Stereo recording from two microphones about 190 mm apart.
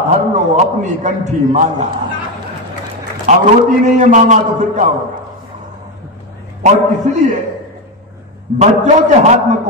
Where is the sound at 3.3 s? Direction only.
40° right (ahead or behind).